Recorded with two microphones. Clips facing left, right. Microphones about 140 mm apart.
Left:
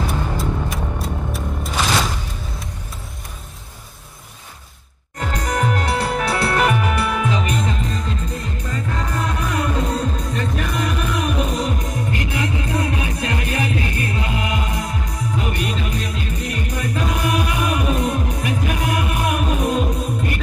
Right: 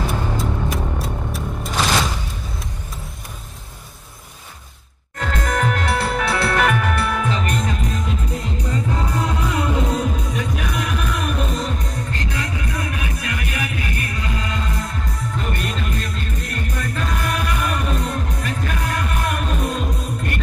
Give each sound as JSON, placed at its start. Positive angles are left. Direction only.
{"t": 0.4, "sound": "music", "side_deg": 0}
{"t": 5.2, "sound": "music", "side_deg": 15}
{"t": 6.4, "sound": "music", "side_deg": 30}
{"t": 6.7, "sound": "music", "side_deg": 5}
{"t": 8.4, "sound": "music", "side_deg": -20}
{"t": 10.1, "sound": "music", "side_deg": -5}
{"t": 11.9, "sound": "music", "side_deg": 15}